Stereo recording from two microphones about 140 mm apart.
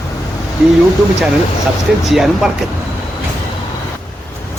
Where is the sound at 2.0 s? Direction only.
Centre (ahead or behind).